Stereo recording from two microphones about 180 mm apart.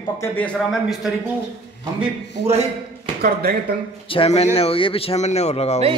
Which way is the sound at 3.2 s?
60° right (ahead or behind).